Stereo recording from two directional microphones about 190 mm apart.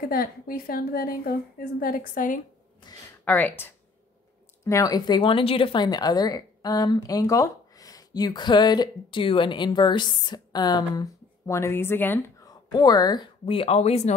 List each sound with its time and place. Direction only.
0.1 s a woman's voice: 50° left (ahead or behind)
3.3 s speech: 10° left (ahead or behind); by 14.1 s 35° left (ahead or behind)